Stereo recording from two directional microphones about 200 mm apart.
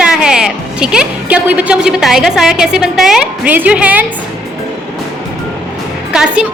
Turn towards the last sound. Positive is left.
turn(degrees=-5)  # may be behind; listen again after turning